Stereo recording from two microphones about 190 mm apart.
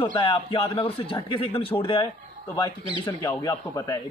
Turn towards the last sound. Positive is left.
turn(degrees=15)  # may be behind; listen again after turning